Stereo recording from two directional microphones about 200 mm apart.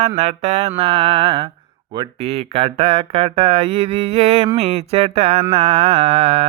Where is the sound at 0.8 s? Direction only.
25° right (ahead or behind).